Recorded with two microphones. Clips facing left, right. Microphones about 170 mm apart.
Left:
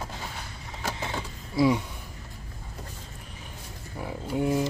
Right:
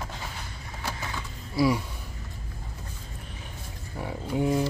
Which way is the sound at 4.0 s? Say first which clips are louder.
Right 1 dB; centre (ahead or behind).